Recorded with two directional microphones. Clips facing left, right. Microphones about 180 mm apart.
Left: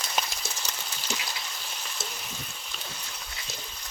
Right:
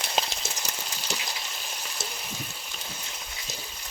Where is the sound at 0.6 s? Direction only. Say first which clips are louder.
Right 1 dB; 10° right (ahead or behind).